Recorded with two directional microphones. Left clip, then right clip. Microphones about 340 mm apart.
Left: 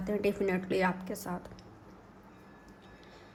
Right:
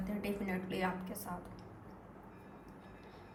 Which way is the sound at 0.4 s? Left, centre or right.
Centre.